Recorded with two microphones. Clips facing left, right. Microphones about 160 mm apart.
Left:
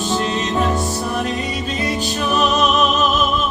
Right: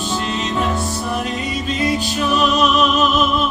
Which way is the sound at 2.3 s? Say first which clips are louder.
Right 1 dB; 45° left (ahead or behind).